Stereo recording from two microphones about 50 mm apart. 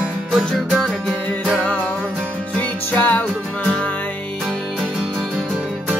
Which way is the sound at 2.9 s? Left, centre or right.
Left.